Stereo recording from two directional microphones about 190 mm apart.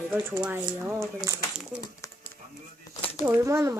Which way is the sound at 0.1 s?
10° right (ahead or behind).